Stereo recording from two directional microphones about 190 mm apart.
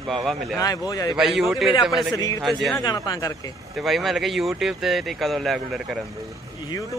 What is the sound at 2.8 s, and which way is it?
Speech, 20° left (ahead or behind).